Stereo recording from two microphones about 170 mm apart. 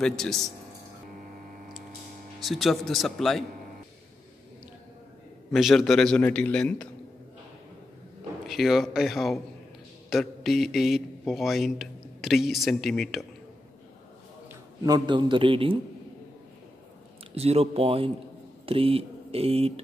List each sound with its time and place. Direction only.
0.0 s a man's voice: centre (ahead or behind)
2.4 s a man's voice: centre (ahead or behind)
5.5 s a man's voice: centre (ahead or behind)
8.5 s a man's voice: centre (ahead or behind)
14.5 s a man's voice: 20° right (ahead or behind)
17.4 s speech: 35° right (ahead or behind)